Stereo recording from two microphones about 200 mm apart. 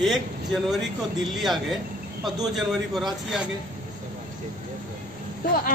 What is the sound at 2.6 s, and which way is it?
Speech, centre (ahead or behind).